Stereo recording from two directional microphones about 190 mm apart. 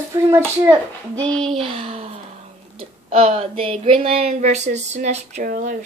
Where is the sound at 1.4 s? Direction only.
30° right (ahead or behind).